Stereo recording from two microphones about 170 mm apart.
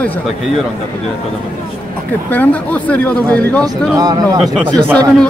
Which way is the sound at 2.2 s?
10° left (ahead or behind).